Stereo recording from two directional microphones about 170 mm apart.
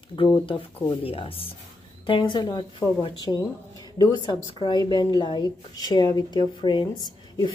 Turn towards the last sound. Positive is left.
turn(degrees=25)  # may be behind; listen again after turning